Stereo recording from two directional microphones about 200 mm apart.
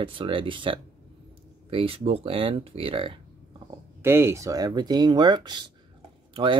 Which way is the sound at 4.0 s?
10° right (ahead or behind).